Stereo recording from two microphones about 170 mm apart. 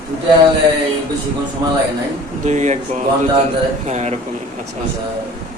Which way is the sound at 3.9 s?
40° right (ahead or behind).